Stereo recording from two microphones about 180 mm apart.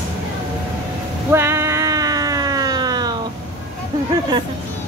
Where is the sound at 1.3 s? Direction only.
15° right (ahead or behind).